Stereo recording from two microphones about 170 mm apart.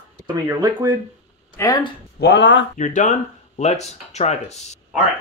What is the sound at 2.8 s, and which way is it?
Speech, 45° left (ahead or behind).